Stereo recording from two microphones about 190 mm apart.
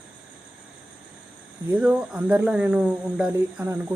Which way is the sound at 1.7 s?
5° right (ahead or behind).